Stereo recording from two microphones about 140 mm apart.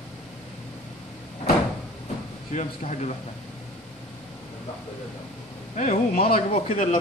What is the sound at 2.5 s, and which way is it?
Speech, 55° left (ahead or behind).